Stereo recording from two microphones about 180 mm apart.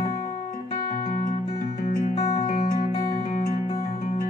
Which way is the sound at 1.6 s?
45° left (ahead or behind).